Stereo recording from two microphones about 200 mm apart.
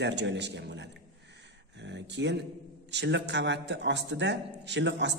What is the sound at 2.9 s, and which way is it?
A man's voice, 60° right (ahead or behind).